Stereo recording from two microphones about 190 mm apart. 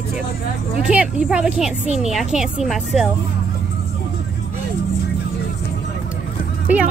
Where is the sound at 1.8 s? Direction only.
40° right (ahead or behind).